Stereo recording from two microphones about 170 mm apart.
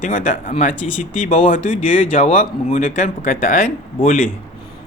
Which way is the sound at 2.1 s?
40° left (ahead or behind).